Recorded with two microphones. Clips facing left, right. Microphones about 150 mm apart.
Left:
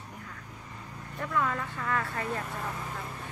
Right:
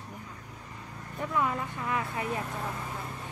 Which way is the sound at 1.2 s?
20° right (ahead or behind).